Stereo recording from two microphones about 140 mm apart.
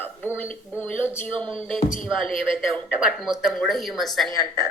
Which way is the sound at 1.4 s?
40° right (ahead or behind).